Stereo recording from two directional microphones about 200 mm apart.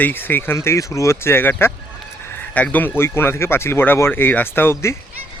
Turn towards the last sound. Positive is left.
turn(degrees=10)  # may be behind; listen again after turning